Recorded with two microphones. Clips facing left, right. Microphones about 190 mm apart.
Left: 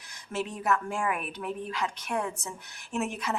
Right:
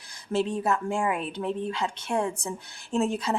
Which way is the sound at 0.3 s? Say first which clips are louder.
Right 4 dB; 30° right (ahead or behind).